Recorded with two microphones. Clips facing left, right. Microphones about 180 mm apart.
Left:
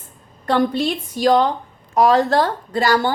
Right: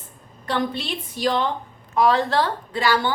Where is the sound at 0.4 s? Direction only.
45° left (ahead or behind).